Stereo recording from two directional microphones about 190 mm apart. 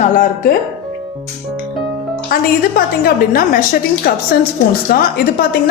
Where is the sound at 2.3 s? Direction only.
50° left (ahead or behind).